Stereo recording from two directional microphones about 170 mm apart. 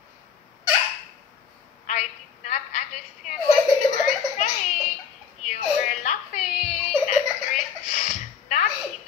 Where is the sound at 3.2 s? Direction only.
45° left (ahead or behind).